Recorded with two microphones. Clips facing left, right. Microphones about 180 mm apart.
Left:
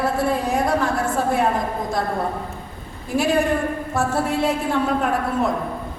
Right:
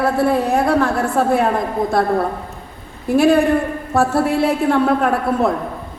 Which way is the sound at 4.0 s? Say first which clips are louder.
Right 6 dB; 60° right (ahead or behind).